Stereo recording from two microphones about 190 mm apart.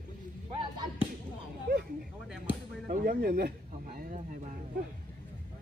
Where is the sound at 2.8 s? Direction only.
50° right (ahead or behind).